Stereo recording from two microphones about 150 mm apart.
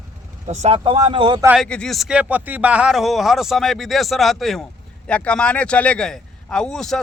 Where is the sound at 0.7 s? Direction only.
35° right (ahead or behind).